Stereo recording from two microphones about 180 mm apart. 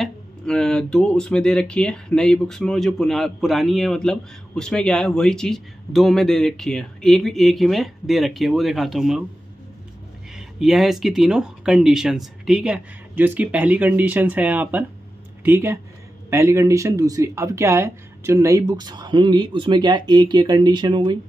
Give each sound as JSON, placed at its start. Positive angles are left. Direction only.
{"t": 0.0, "sound": "speech", "side_deg": 5}
{"t": 10.3, "sound": "speech", "side_deg": 0}